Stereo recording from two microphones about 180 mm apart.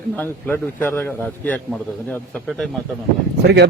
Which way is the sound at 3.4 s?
70° right (ahead or behind).